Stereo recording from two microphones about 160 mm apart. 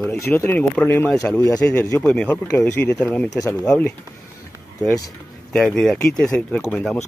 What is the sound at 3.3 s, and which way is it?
Speech, 20° left (ahead or behind).